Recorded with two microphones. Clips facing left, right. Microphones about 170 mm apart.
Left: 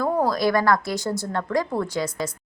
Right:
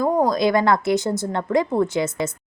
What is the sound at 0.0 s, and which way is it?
A woman's voice, 15° right (ahead or behind).